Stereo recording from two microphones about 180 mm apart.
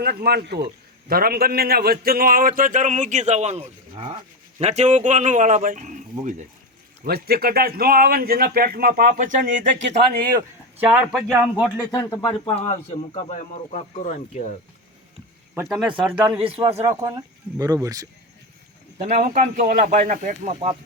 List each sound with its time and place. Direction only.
0.0 s a man's voice: 60° right (ahead or behind)
7.0 s speech: 60° right (ahead or behind)
10.3 s speech: 10° right (ahead or behind)
11.9 s speech: 20° left (ahead or behind)
12.5 s speech: 35° left (ahead or behind)
15.5 s speech: 10° right (ahead or behind)
16.4 s a man's voice: 30° right (ahead or behind)
16.8 s speech: 20° right (ahead or behind)
19.2 s a man's voice: 50° right (ahead or behind)